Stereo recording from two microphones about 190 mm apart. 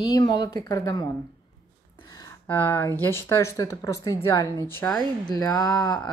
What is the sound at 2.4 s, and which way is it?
Speech, 10° left (ahead or behind).